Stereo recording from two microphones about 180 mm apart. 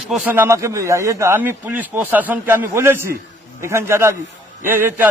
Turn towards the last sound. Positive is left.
turn(degrees=-10)  # may be behind; listen again after turning